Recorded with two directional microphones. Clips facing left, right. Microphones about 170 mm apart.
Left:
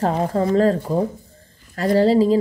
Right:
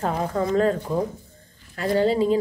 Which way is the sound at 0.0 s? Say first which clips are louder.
Left 4 dB; 35° left (ahead or behind).